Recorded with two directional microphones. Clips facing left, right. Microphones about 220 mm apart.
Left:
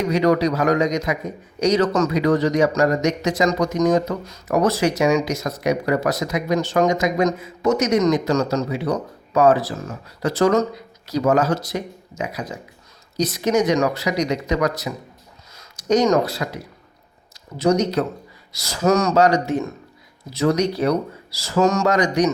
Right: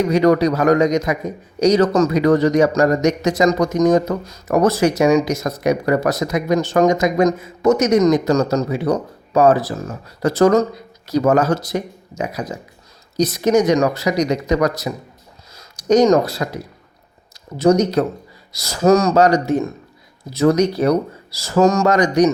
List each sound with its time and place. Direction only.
0.1 s speech: 45° right (ahead or behind)
2.1 s speech: 50° right (ahead or behind)
17.6 s speech: 40° right (ahead or behind)